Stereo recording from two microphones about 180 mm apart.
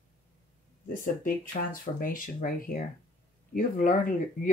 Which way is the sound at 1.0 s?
50° left (ahead or behind).